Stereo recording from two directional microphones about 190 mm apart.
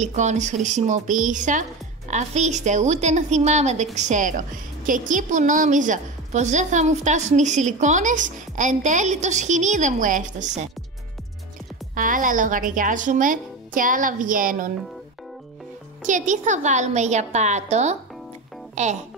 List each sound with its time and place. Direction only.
0.0 s a woman's voice: 35° right (ahead or behind)
11.9 s speech: 45° right (ahead or behind)
16.0 s a woman's voice: 40° right (ahead or behind)